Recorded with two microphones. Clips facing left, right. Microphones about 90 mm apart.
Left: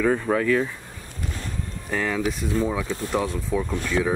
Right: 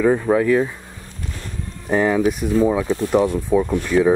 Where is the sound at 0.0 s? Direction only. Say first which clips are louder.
Right 5 dB; 15° right (ahead or behind).